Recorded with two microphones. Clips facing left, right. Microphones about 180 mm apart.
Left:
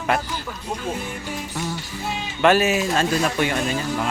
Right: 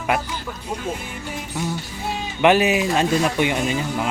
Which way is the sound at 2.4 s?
15° right (ahead or behind).